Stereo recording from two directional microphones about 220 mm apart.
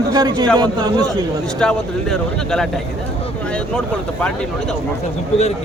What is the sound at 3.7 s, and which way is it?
Speech, 5° left (ahead or behind).